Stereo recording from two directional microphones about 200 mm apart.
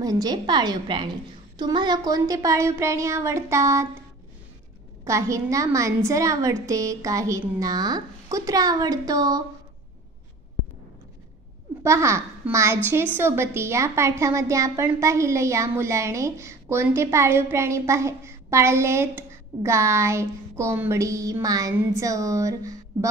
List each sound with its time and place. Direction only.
0.0 s a woman's voice: 20° right (ahead or behind)
5.0 s a woman's voice: 15° right (ahead or behind)
11.8 s a woman's voice: 15° right (ahead or behind)